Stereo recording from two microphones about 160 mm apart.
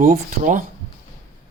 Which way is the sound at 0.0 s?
50° right (ahead or behind).